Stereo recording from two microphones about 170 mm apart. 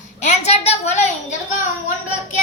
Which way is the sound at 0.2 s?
40° left (ahead or behind).